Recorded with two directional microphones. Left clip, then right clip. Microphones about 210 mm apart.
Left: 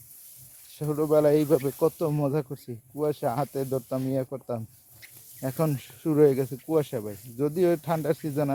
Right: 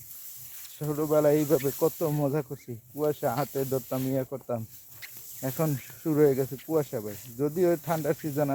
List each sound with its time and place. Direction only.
0.8 s speech: 20° left (ahead or behind)